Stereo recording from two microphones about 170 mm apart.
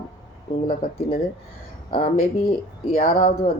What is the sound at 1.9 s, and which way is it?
Speech, 55° left (ahead or behind).